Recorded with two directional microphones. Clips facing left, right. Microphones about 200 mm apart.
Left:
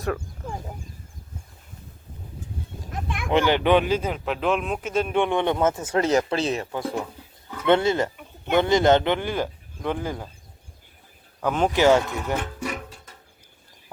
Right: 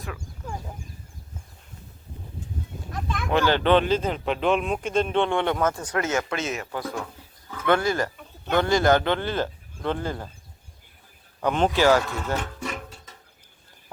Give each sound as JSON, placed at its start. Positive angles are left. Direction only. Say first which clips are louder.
{"t": 3.2, "sound": "speech", "louder": "left 2 dB", "side_deg": 15}
{"t": 6.7, "sound": "speech", "louder": "left 3 dB", "side_deg": 20}
{"t": 11.3, "sound": "speech", "louder": "even", "side_deg": 5}
{"t": 11.8, "sound": "speech", "louder": "left 3 dB", "side_deg": 20}